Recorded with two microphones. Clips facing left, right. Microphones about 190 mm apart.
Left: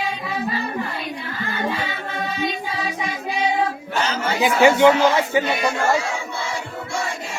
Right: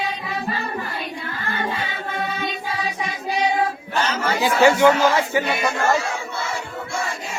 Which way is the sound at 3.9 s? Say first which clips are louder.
Even; 15° left (ahead or behind).